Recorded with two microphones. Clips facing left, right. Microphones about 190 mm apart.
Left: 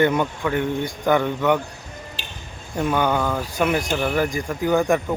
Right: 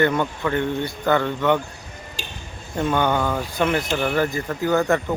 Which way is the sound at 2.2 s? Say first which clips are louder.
Right 3 dB; 45° right (ahead or behind).